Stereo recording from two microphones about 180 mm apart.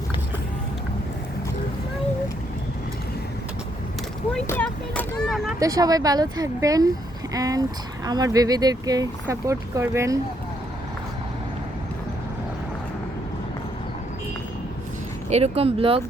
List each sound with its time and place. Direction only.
4.3 s vehicle: 10° left (ahead or behind)
5.5 s speech: 20° right (ahead or behind)
15.3 s speech: 35° right (ahead or behind)